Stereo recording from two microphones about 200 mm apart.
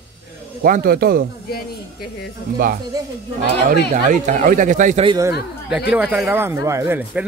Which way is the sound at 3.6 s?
40° right (ahead or behind).